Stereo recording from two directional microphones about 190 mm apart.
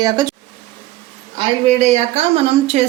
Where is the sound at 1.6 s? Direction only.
35° right (ahead or behind).